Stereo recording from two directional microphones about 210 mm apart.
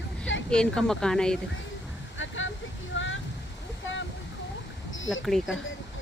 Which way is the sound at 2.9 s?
65° left (ahead or behind).